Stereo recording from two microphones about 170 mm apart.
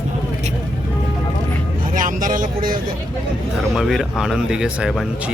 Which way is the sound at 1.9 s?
50° right (ahead or behind).